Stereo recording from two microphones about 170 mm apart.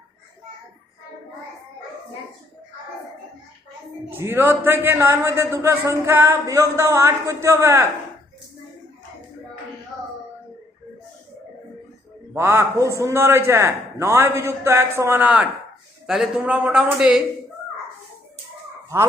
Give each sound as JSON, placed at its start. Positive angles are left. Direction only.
{"t": 4.2, "sound": "a man's voice", "side_deg": -15}
{"t": 12.3, "sound": "a man's voice", "side_deg": -15}